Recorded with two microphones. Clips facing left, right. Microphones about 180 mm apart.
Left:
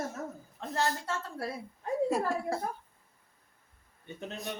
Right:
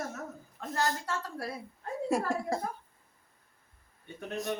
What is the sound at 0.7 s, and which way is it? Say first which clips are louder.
Female singing: even; 25° left (ahead or behind).